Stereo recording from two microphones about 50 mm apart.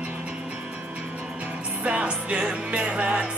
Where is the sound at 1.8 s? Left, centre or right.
Right.